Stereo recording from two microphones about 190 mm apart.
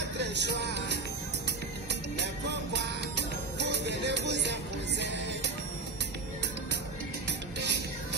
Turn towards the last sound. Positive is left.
turn(degrees=-65)  # may be behind; listen again after turning